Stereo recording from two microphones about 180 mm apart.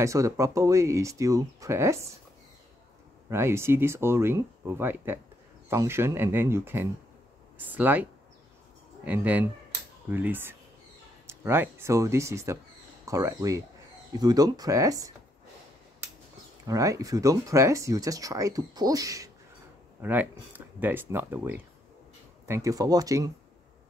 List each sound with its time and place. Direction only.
0.0 s speech: 15° right (ahead or behind)
3.3 s speech: 15° right (ahead or behind)
16.6 s speech: 20° right (ahead or behind)